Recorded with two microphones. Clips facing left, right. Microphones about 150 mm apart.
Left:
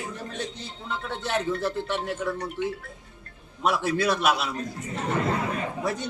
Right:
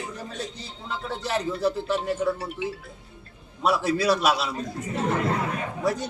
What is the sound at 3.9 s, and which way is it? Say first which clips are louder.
Speech: right 1 dB; 35° right (ahead or behind).